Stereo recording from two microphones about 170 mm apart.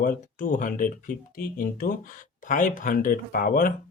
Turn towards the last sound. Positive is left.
turn(degrees=55)  # may be behind; listen again after turning